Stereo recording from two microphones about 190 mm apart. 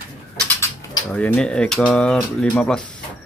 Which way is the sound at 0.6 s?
20° left (ahead or behind).